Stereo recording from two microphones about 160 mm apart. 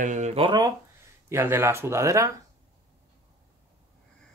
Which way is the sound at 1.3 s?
15° right (ahead or behind).